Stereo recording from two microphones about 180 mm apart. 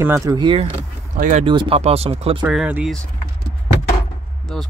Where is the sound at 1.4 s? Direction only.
30° right (ahead or behind).